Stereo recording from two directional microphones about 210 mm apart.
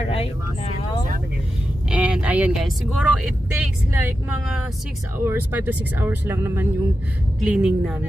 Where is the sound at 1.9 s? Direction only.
5° right (ahead or behind).